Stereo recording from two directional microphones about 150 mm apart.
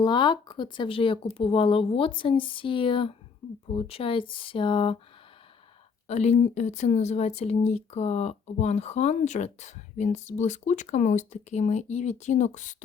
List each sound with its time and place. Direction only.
0.0 s speech: 30° left (ahead or behind)
6.1 s speech: 50° left (ahead or behind)